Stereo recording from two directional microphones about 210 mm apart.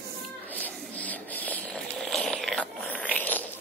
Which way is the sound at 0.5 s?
10° left (ahead or behind).